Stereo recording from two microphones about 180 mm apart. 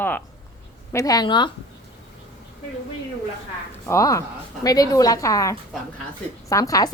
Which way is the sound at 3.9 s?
15° left (ahead or behind).